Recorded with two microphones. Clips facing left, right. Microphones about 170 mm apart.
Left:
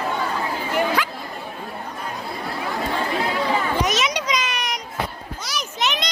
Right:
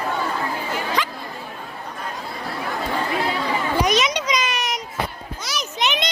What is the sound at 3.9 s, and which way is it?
Children playing, 5° left (ahead or behind).